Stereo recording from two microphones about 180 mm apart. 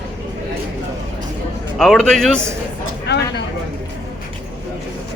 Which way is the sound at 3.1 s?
70° left (ahead or behind).